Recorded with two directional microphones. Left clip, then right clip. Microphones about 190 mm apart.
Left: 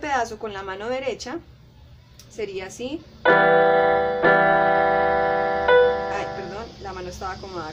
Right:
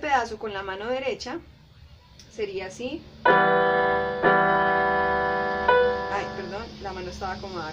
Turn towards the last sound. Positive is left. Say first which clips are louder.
# left 1 dB
turn(degrees=10)  # may be behind; listen again after turning